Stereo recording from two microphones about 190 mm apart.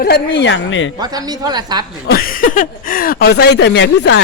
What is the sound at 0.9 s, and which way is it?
Speech, 20° right (ahead or behind).